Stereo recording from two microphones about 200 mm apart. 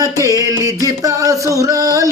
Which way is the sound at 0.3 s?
15° right (ahead or behind).